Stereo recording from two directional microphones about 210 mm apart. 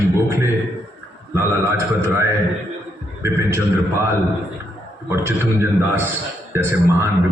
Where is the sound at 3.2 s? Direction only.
15° right (ahead or behind).